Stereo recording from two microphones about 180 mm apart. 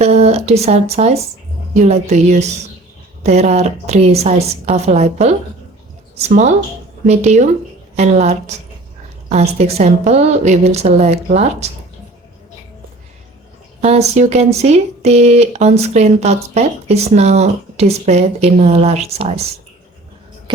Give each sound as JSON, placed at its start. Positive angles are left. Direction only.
{"t": 0.0, "sound": "speech", "side_deg": -35}
{"t": 13.8, "sound": "speech", "side_deg": -35}